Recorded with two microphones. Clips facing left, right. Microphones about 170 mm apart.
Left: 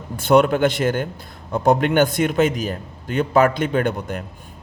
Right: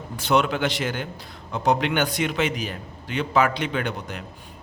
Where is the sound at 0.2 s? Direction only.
50° left (ahead or behind).